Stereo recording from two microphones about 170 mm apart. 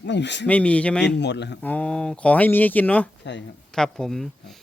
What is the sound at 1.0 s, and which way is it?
Speech, 90° left.